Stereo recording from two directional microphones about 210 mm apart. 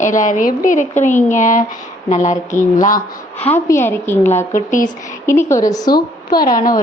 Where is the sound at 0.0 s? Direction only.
35° left (ahead or behind).